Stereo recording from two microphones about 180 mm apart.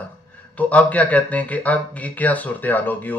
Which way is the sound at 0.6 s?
10° left (ahead or behind).